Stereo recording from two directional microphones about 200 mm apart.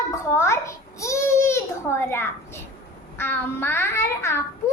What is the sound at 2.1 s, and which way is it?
A child's voice, 10° left (ahead or behind).